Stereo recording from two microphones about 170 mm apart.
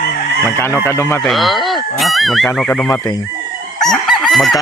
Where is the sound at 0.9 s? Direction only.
15° left (ahead or behind).